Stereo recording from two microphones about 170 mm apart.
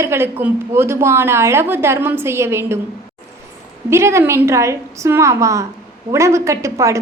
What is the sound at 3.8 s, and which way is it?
A woman's voice, 15° right (ahead or behind).